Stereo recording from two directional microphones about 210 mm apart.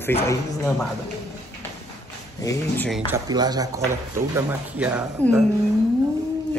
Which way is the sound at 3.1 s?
20° right (ahead or behind).